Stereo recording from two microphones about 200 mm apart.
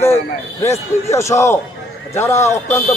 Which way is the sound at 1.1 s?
15° left (ahead or behind).